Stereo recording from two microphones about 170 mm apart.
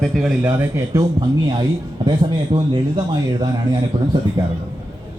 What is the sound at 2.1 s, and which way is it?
Speech, 25° right (ahead or behind).